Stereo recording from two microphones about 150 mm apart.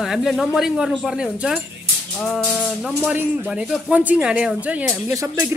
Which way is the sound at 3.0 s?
10° right (ahead or behind).